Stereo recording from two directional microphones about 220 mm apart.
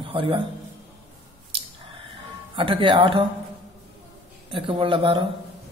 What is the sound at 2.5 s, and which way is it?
Speech, 20° right (ahead or behind).